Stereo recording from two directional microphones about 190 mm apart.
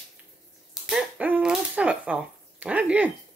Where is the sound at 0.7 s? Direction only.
5° right (ahead or behind).